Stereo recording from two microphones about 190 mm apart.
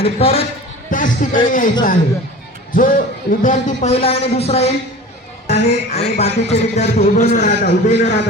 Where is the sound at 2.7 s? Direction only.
45° left (ahead or behind).